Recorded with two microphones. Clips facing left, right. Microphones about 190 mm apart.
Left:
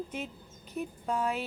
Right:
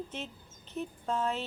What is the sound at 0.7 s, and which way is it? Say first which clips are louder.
Speech: left 1 dB; 10° left (ahead or behind).